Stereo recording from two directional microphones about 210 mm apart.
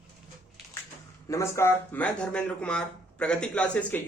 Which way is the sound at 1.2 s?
15° left (ahead or behind).